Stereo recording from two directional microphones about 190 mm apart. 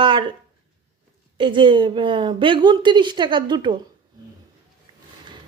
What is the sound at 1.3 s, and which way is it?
A woman's voice, 25° right (ahead or behind).